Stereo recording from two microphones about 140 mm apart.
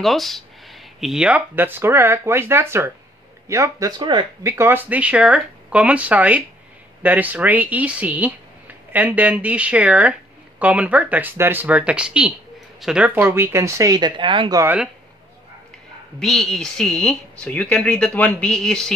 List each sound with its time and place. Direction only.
0.0 s speech: centre (ahead or behind); by 4.3 s 35° right (ahead or behind)
4.4 s speech: 20° right (ahead or behind); by 14.6 s 35° right (ahead or behind)
16.2 s speech: centre (ahead or behind)